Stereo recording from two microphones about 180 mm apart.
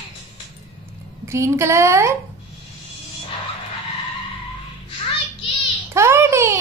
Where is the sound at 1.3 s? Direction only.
15° right (ahead or behind).